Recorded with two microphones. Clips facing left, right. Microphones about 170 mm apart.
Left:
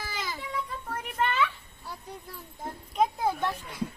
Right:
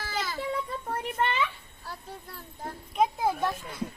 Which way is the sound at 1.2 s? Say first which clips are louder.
Left 1 dB; 20° right (ahead or behind).